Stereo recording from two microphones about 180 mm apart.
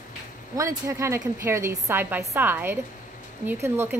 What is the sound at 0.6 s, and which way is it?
A woman's voice, 15° right (ahead or behind).